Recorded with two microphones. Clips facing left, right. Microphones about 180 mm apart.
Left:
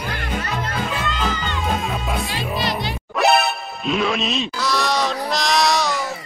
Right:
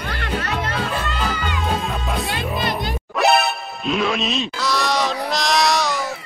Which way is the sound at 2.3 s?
55° right (ahead or behind).